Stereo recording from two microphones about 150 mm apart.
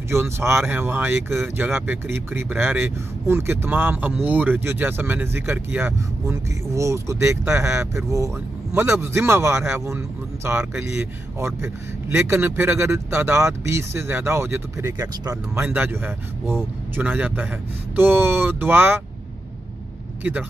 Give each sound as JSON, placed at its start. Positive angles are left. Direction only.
{"t": 0.1, "sound": "speech", "side_deg": -15}
{"t": 15.6, "sound": "speech", "side_deg": -10}